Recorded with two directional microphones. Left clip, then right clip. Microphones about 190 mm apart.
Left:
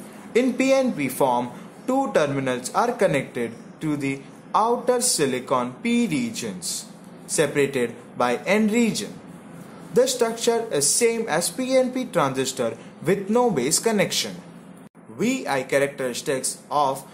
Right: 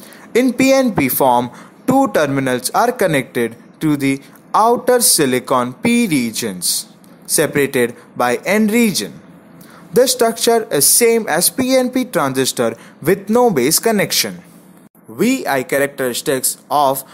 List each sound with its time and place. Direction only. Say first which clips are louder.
0.3 s speech: right 7 dB; 40° right (ahead or behind)